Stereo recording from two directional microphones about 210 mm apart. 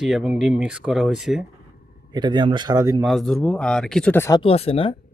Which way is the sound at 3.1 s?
Centre (ahead or behind).